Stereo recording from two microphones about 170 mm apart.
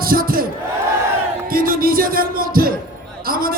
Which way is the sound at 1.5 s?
60° right (ahead or behind).